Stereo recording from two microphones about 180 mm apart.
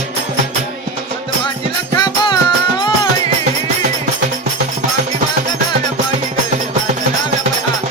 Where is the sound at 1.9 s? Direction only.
20° left (ahead or behind).